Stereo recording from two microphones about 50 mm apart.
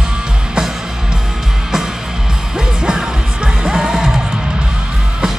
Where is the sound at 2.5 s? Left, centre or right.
Centre.